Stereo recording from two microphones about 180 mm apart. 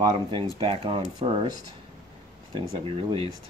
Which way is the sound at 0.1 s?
30° right (ahead or behind).